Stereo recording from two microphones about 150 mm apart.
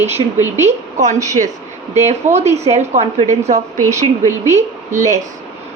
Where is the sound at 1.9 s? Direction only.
50° right (ahead or behind).